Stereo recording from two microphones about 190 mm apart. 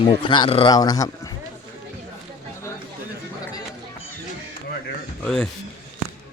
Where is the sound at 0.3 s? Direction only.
25° left (ahead or behind).